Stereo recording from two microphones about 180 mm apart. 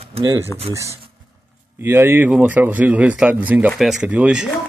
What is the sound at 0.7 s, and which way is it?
A man's voice, 15° right (ahead or behind).